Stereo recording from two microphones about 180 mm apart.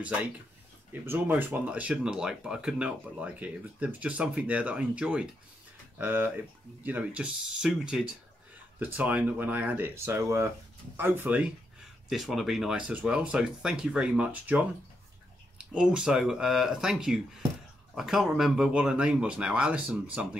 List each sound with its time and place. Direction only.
1.0 s speech: 10° right (ahead or behind)